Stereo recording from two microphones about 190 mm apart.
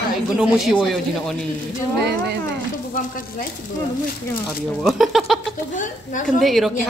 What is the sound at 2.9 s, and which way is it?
Speech, 45° left (ahead or behind).